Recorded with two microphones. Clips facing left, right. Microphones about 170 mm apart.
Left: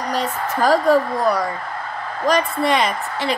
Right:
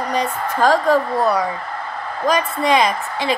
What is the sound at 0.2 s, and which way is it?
Speech, 5° left (ahead or behind).